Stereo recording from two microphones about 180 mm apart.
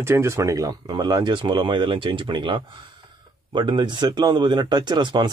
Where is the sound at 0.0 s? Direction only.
15° right (ahead or behind).